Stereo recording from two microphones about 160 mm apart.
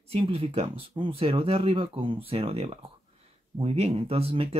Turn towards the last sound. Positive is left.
turn(degrees=-35)  # may be behind; listen again after turning